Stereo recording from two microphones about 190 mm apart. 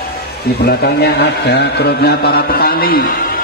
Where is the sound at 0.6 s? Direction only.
55° left (ahead or behind).